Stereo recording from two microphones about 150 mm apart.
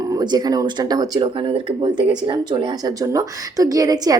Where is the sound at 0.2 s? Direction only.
25° right (ahead or behind).